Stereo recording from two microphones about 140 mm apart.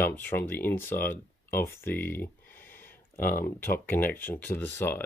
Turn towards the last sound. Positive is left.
turn(degrees=15)  # may be behind; listen again after turning